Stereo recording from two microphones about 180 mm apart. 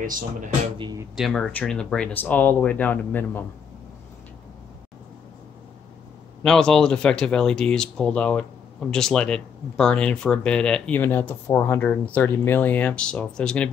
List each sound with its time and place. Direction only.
0.0 s speech: 50° right (ahead or behind)
0.7 s speech: 25° right (ahead or behind)
1.1 s speech: centre (ahead or behind)
6.4 s speech: 5° left (ahead or behind)